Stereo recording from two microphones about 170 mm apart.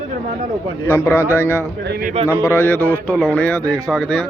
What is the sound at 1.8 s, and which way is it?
Speech, 75° right (ahead or behind).